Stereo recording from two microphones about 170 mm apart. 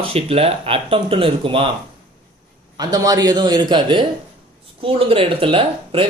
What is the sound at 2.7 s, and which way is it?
A man's voice, 20° right (ahead or behind).